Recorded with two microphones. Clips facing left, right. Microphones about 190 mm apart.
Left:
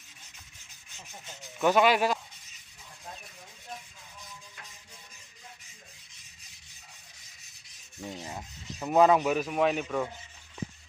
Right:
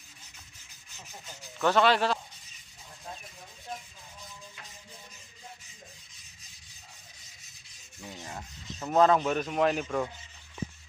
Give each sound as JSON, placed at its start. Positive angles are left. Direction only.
{"t": 1.6, "sound": "speech", "side_deg": 10}
{"t": 8.0, "sound": "rub", "side_deg": 25}
{"t": 8.3, "sound": "rub", "side_deg": 15}